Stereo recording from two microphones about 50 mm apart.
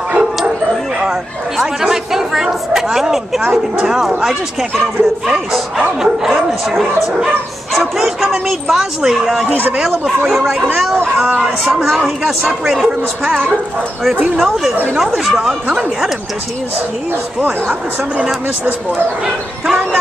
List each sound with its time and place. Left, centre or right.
1.6 s a woman's voice: centre
11.6 s speech: centre
14.3 s a woman's voice: centre
17.4 s speech: right
19.2 s a woman's voice: centre